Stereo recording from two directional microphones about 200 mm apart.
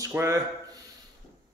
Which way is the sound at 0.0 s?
15° right (ahead or behind).